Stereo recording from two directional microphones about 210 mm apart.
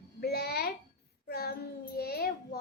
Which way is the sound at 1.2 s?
50° left (ahead or behind).